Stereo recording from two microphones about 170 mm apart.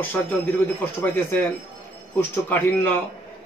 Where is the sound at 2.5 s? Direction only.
10° left (ahead or behind).